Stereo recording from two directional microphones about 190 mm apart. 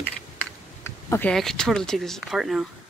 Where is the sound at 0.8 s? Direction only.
15° left (ahead or behind).